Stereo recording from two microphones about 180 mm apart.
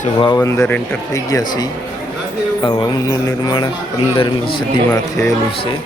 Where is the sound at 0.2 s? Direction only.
25° left (ahead or behind).